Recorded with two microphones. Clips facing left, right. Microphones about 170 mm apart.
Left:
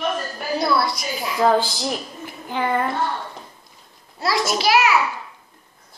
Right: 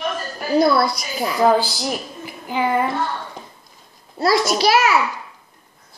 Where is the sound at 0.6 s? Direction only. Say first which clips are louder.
Right 6 dB; 50° right (ahead or behind).